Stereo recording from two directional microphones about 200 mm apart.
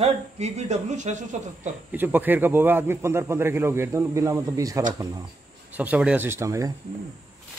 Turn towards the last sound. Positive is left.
turn(degrees=-15)  # may be behind; listen again after turning